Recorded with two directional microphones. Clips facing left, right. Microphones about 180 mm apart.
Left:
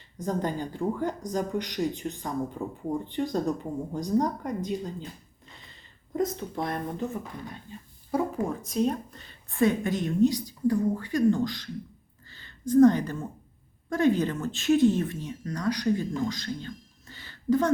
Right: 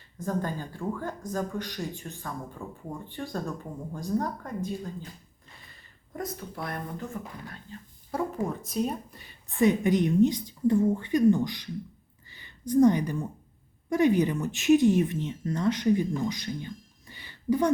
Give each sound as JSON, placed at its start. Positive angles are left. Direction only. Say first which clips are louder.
{"t": 0.2, "sound": "speech", "louder": "left 2 dB", "side_deg": 20}
{"t": 6.1, "sound": "speech", "louder": "left 7 dB", "side_deg": 20}
{"t": 8.4, "sound": "speech", "louder": "left 3 dB", "side_deg": 0}
{"t": 12.3, "sound": "a sound", "louder": "left 1 dB", "side_deg": -15}
{"t": 12.7, "sound": "speech", "louder": "left 2 dB", "side_deg": -15}